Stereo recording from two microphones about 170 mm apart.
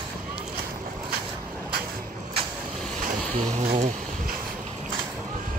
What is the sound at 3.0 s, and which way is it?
Vehicle, 55° right (ahead or behind).